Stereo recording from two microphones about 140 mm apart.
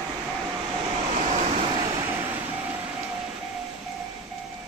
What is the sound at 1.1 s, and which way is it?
Vehicle, 55° right (ahead or behind).